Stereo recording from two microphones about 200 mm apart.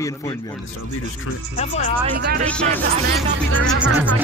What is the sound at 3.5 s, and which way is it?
Speech, 90° right.